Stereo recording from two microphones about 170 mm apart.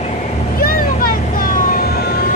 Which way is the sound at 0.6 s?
60° left (ahead or behind).